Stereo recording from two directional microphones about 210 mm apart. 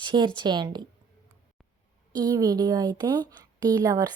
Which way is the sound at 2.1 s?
20° right (ahead or behind).